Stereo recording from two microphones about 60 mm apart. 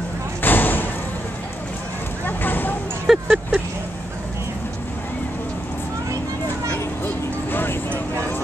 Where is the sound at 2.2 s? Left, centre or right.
Left.